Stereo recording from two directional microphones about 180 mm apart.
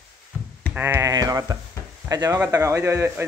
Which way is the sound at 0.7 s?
10° right (ahead or behind).